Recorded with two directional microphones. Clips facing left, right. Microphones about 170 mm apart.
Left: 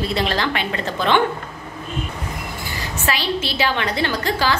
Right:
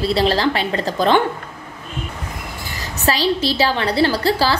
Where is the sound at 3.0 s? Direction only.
35° right (ahead or behind).